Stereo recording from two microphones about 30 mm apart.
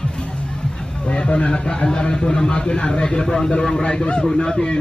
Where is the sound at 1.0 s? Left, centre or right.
Left.